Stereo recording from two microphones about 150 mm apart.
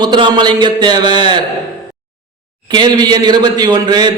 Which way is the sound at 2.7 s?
30° right (ahead or behind).